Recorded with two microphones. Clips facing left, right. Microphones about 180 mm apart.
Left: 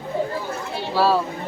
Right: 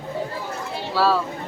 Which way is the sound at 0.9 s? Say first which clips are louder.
Left 1 dB; 20° left (ahead or behind).